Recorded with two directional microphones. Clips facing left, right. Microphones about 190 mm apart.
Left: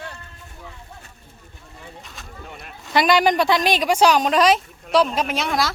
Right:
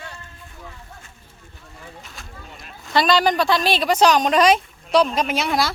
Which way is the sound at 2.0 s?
Centre (ahead or behind).